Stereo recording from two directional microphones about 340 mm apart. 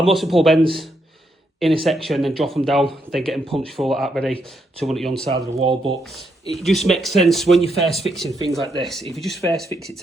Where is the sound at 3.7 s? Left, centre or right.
Centre.